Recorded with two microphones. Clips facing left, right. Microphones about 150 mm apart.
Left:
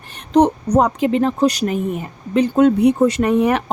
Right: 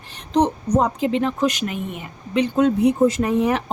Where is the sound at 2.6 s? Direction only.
70° left (ahead or behind).